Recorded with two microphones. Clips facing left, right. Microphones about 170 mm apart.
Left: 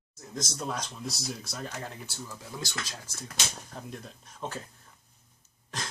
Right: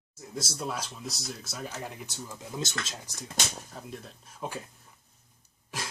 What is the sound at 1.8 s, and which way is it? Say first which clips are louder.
Speech: right 1 dB; 15° right (ahead or behind).